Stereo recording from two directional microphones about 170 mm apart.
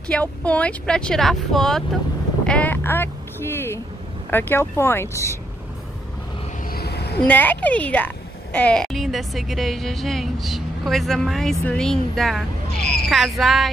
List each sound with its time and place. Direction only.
0.1 s a woman's voice: 10° left (ahead or behind)
2.4 s vehicle: 10° left (ahead or behind)
4.3 s speech: 10° left (ahead or behind)
6.7 s a sound: 70° left (ahead or behind)
7.2 s a woman's voice: 10° left (ahead or behind)